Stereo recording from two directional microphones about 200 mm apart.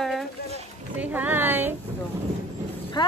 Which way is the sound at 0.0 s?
Centre (ahead or behind).